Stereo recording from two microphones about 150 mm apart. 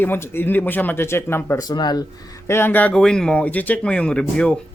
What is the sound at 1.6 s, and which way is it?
Speech, 30° left (ahead or behind).